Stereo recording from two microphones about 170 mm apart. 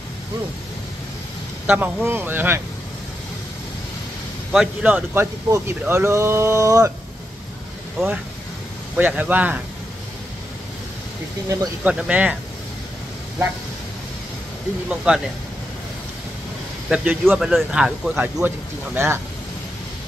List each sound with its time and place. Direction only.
1.7 s speech: 10° right (ahead or behind)
4.5 s speech: 5° right (ahead or behind)
8.0 s speech: centre (ahead or behind)
11.4 s speech: 20° right (ahead or behind)
11.8 s speech: 10° right (ahead or behind)
14.9 s speech: 5° right (ahead or behind)
16.9 s speech: 10° right (ahead or behind)